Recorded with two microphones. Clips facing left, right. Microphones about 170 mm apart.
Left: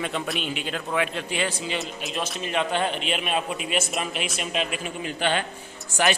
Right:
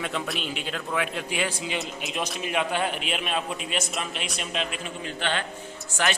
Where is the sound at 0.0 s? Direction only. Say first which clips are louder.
Left 2 dB; centre (ahead or behind).